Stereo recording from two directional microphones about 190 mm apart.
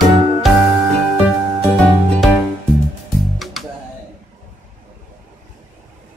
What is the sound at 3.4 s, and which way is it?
Music, centre (ahead or behind).